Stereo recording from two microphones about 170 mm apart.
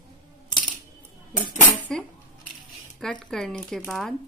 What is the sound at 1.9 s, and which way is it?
A woman's voice, 5° left (ahead or behind).